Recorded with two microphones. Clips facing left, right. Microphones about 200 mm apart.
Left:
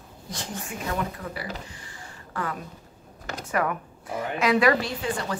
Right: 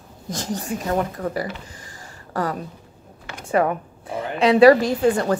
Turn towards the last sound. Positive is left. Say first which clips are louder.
# right 11 dB
turn(degrees=-45)  # may be behind; listen again after turning